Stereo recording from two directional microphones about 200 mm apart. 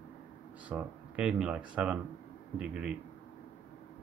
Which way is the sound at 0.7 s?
5° right (ahead or behind).